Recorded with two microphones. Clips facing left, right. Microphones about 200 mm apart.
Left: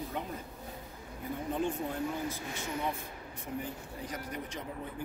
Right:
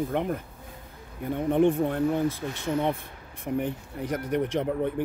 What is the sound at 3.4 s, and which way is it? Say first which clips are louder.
Speech: right 11 dB; 60° right (ahead or behind).